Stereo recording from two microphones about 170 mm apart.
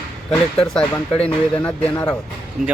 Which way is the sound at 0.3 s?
5° left (ahead or behind).